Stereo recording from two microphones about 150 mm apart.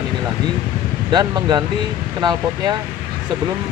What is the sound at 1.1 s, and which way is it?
Speech, 30° right (ahead or behind).